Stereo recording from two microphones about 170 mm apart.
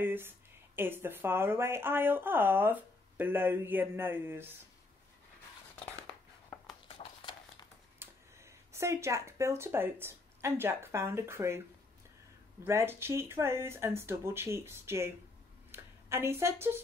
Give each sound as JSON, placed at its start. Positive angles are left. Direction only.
{"t": 0.0, "sound": "speech", "side_deg": -10}
{"t": 7.0, "sound": "a sound", "side_deg": 30}
{"t": 8.0, "sound": "speech", "side_deg": -15}
{"t": 12.6, "sound": "a woman's voice", "side_deg": -15}